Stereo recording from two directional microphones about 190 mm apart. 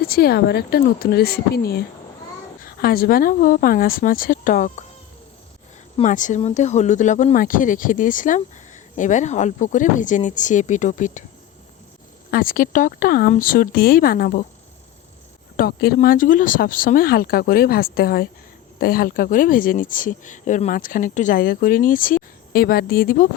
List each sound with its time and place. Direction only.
0.1 s speech: 55° left (ahead or behind)
6.0 s speech: 40° left (ahead or behind)
12.3 s speech: 50° left (ahead or behind)
15.5 s speech: 55° left (ahead or behind)